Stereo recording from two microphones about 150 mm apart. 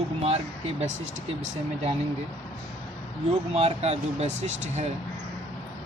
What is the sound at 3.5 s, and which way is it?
Speech, 45° right (ahead or behind).